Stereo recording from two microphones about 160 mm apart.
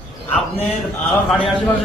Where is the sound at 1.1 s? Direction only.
Centre (ahead or behind).